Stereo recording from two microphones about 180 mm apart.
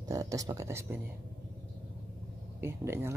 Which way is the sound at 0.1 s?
20° right (ahead or behind).